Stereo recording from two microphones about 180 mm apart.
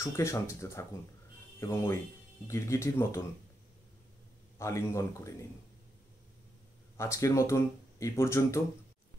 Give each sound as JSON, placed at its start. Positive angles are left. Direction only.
{"t": 0.0, "sound": "speech", "side_deg": 15}
{"t": 4.6, "sound": "speech", "side_deg": 15}
{"t": 7.0, "sound": "speech", "side_deg": 15}